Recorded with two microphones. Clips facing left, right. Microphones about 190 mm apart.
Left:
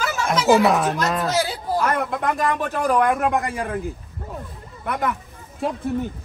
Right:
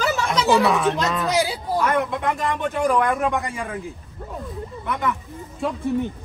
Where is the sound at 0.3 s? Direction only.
55° left (ahead or behind).